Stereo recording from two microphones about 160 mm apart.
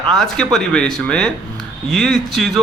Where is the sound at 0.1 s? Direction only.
Centre (ahead or behind).